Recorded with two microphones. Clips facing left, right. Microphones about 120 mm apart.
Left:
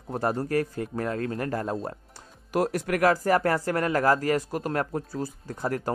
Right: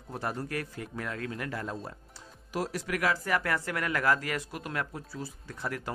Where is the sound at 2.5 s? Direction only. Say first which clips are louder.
Left 7 dB; 55° left (ahead or behind).